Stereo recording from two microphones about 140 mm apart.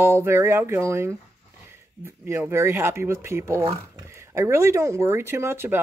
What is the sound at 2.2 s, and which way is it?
Speech, 15° right (ahead or behind).